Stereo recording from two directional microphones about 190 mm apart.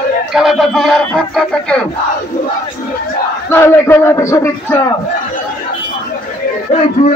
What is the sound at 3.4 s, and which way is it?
A man's voice, 15° left (ahead or behind).